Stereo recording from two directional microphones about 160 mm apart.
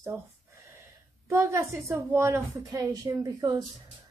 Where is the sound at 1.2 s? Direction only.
20° right (ahead or behind).